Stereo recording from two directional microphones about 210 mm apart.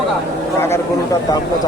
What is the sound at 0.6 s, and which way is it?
Speech, 15° left (ahead or behind).